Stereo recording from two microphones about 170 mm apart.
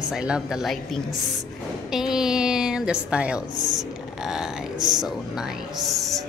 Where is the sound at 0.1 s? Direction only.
5° right (ahead or behind).